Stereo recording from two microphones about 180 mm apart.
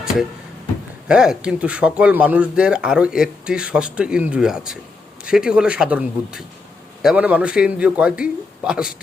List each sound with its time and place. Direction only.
0.0 s speech: 5° right (ahead or behind)